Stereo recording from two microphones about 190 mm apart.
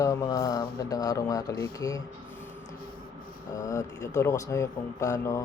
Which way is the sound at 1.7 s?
20° left (ahead or behind).